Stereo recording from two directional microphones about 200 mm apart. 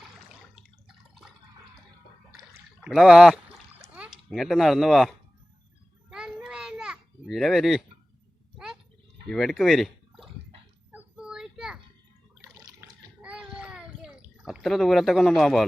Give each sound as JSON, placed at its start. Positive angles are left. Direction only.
{"t": 0.5, "sound": "a sound", "side_deg": 0}
{"t": 2.8, "sound": "speech", "side_deg": 0}
{"t": 3.8, "sound": "splash", "side_deg": -5}
{"t": 6.1, "sound": "children playing", "side_deg": -5}
{"t": 8.5, "sound": "gargling", "side_deg": -5}
{"t": 9.3, "sound": "speech", "side_deg": 0}
{"t": 10.9, "sound": "child singing", "side_deg": -5}
{"t": 12.5, "sound": "water", "side_deg": -10}